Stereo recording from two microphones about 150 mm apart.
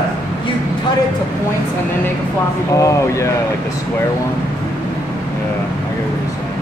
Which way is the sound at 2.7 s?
20° left (ahead or behind).